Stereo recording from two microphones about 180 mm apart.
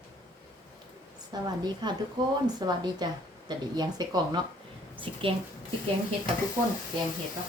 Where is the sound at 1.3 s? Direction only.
25° right (ahead or behind).